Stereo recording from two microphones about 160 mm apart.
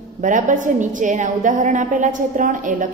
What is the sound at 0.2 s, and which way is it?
A woman's voice, 50° right (ahead or behind).